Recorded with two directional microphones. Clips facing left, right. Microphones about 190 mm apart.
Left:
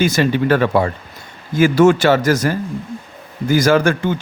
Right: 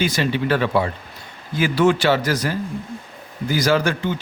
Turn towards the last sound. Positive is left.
turn(degrees=50)  # may be behind; listen again after turning